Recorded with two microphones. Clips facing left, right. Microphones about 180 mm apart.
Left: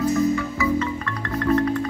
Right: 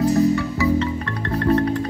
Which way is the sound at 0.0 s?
35° right (ahead or behind).